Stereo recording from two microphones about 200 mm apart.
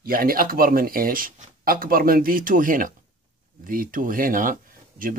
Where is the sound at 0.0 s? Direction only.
45° right (ahead or behind).